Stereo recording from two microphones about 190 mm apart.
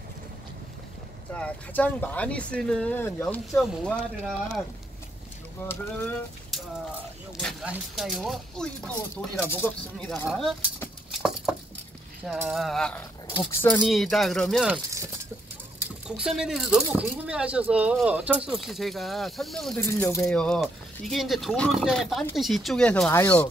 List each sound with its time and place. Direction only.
1.3 s speech: 5° left (ahead or behind)
5.7 s speech: 10° left (ahead or behind)
11.1 s patter: centre (ahead or behind)
12.3 s speech: centre (ahead or behind)
13.7 s speech: centre (ahead or behind)
14.7 s speech: 15° right (ahead or behind)
15.8 s speech: 5° right (ahead or behind)
19.8 s speech: 15° left (ahead or behind)
20.2 s speech: 5° left (ahead or behind)